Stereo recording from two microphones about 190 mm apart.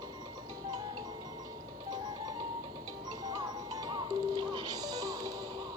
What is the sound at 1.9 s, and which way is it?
Music, 20° right (ahead or behind).